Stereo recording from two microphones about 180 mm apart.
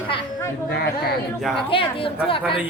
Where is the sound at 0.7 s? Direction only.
60° left (ahead or behind).